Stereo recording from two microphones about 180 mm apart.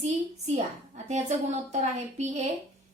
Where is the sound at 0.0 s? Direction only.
40° right (ahead or behind).